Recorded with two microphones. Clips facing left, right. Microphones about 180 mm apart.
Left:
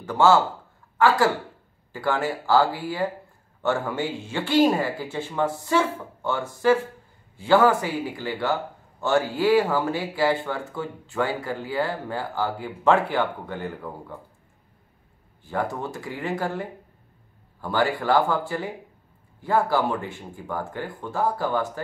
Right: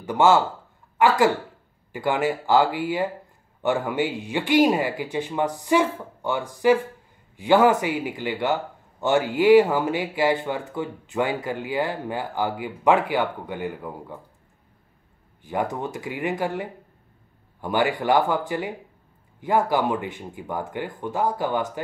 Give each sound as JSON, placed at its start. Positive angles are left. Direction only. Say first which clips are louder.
{"t": 0.0, "sound": "speech", "louder": "even", "side_deg": -15}
{"t": 15.4, "sound": "speech", "louder": "right 1 dB", "side_deg": -15}